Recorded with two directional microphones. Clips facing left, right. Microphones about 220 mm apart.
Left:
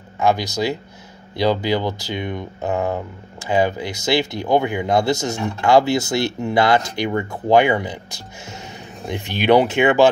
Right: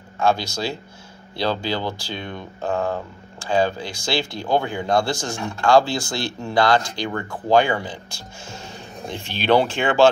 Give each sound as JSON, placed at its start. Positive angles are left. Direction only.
{"t": 0.2, "sound": "speech", "side_deg": 15}
{"t": 9.1, "sound": "speech", "side_deg": 15}